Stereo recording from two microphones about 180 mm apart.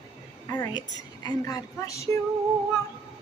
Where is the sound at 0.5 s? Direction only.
20° left (ahead or behind).